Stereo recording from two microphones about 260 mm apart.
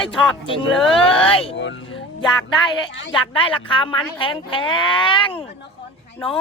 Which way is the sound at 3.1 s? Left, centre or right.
Centre.